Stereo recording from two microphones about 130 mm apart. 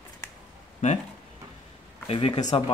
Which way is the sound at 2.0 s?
45° left (ahead or behind).